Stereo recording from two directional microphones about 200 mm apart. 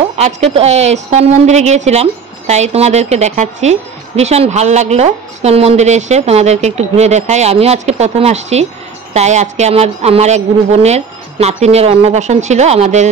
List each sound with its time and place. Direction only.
0.2 s a woman's voice: 30° right (ahead or behind)